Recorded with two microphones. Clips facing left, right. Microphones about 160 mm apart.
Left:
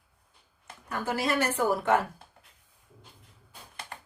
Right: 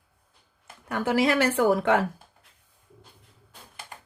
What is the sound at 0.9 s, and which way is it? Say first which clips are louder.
Speech: right 6 dB; 90° right.